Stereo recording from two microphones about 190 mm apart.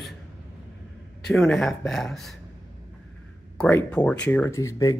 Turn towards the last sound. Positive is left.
turn(degrees=15)  # may be behind; listen again after turning